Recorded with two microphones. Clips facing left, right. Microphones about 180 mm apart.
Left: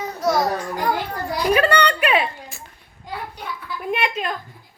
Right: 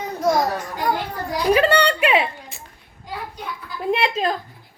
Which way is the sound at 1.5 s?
25° right (ahead or behind).